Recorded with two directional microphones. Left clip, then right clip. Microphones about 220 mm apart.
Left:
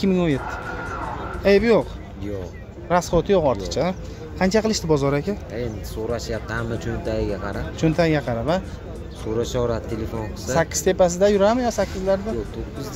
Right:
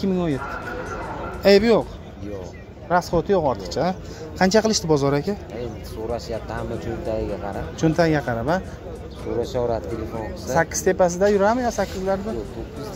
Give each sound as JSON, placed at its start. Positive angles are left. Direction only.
{"t": 0.0, "sound": "speech", "side_deg": 10}
{"t": 1.4, "sound": "speech", "side_deg": -15}
{"t": 2.9, "sound": "speech", "side_deg": 5}
{"t": 4.4, "sound": "speech", "side_deg": -10}
{"t": 6.1, "sound": "speech", "side_deg": 40}
{"t": 7.8, "sound": "speech", "side_deg": -5}
{"t": 9.4, "sound": "speech", "side_deg": 45}
{"t": 10.5, "sound": "speech", "side_deg": 0}